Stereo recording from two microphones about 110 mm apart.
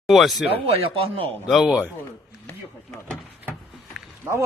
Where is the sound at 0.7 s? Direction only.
55° right (ahead or behind).